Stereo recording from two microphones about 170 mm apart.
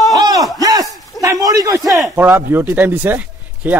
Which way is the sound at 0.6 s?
20° right (ahead or behind).